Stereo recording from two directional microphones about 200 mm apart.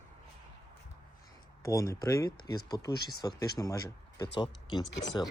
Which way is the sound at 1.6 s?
15° left (ahead or behind).